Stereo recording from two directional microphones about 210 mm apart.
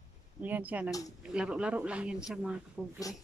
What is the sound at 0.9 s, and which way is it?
Speech, 15° left (ahead or behind).